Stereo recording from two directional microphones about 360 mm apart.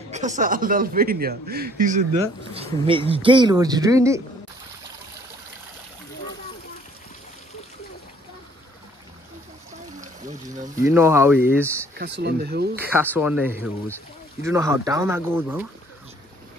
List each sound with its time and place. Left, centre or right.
0.1 s a man's voice: centre
9.9 s a sound: right
10.8 s speech: centre
12.0 s a man's voice: right
12.7 s speech: centre